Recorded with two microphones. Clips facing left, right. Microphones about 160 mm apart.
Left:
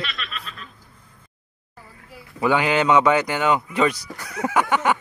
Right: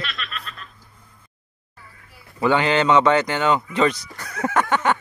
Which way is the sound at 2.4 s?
10° left (ahead or behind).